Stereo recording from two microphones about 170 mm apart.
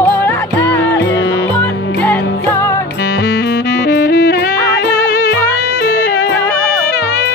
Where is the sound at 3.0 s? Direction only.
90° left.